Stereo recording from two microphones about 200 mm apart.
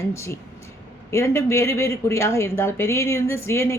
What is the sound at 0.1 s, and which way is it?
Speech, 15° left (ahead or behind).